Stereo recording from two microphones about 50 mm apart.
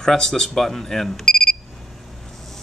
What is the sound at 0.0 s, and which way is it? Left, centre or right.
Speech, centre.